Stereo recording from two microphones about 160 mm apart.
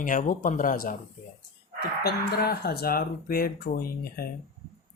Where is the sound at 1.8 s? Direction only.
80° left.